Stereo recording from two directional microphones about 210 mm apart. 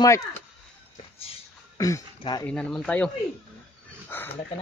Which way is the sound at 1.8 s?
15° left (ahead or behind).